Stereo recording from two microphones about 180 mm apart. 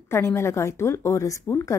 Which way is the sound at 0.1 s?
15° left (ahead or behind).